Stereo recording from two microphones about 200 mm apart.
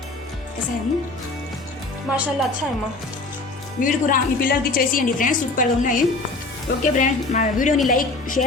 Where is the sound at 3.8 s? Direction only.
45° left (ahead or behind).